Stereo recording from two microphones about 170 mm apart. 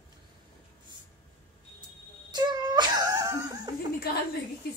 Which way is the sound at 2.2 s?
25° right (ahead or behind).